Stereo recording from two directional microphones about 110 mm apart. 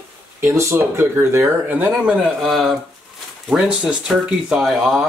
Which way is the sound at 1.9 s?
10° right (ahead or behind).